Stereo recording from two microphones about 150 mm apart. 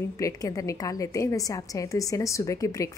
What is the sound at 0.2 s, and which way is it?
Speech, 25° left (ahead or behind).